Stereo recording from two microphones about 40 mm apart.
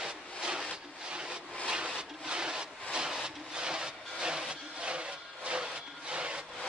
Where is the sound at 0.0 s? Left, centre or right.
Centre.